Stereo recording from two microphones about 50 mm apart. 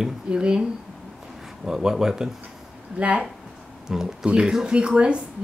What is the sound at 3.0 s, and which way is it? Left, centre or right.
Speech, right.